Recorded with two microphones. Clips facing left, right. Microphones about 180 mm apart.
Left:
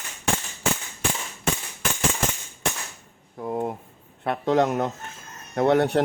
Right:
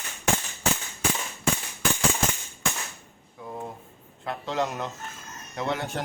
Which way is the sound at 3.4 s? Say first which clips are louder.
Left 9 dB; 60° left (ahead or behind).